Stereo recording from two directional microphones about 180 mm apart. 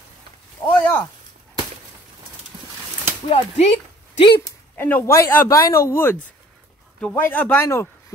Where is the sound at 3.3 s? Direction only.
35° left (ahead or behind).